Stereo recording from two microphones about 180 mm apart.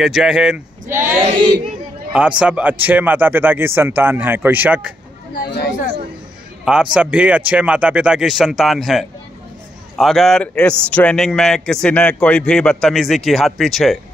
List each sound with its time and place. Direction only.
0.0 s a man's voice: centre (ahead or behind)
5.3 s speech: 55° left (ahead or behind)
6.6 s a man's voice: 5° right (ahead or behind)